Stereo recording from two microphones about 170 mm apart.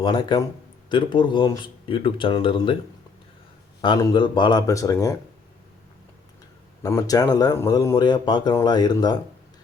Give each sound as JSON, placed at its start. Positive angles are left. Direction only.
{"t": 0.0, "sound": "speech", "side_deg": 25}
{"t": 3.8, "sound": "speech", "side_deg": 25}
{"t": 6.8, "sound": "speech", "side_deg": 20}